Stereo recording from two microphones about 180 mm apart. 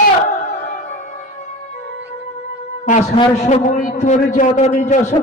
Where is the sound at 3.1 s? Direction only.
40° left (ahead or behind).